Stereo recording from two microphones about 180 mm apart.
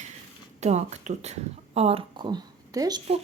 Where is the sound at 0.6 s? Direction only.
40° right (ahead or behind); by 3.0 s 20° right (ahead or behind).